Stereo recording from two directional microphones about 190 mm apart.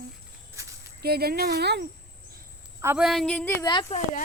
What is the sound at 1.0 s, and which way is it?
Speech, 55° right (ahead or behind).